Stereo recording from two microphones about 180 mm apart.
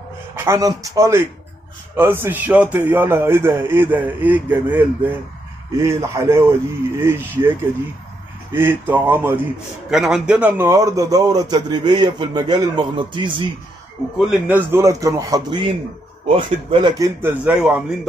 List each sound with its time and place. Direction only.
0.5 s a man's voice: 20° right (ahead or behind)
8.5 s a man's voice: 10° right (ahead or behind)
14.1 s speech: 5° right (ahead or behind)
14.7 s a man's voice: 15° right (ahead or behind)
17.2 s a man's voice: 10° right (ahead or behind)